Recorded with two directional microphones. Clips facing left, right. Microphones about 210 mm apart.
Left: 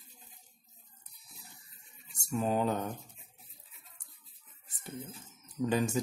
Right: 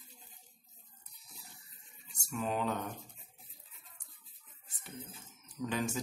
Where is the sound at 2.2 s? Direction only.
35° left (ahead or behind).